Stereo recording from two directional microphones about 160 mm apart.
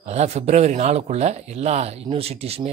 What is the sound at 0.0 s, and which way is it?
Speech, 45° right (ahead or behind).